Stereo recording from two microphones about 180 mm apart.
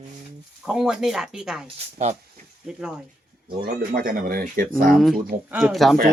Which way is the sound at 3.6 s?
50° right (ahead or behind).